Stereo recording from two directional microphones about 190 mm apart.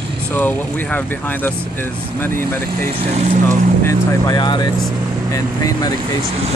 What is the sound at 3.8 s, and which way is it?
Speech, 15° left (ahead or behind).